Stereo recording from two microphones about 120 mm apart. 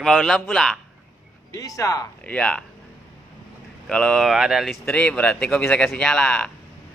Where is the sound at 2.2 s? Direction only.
10° left (ahead or behind).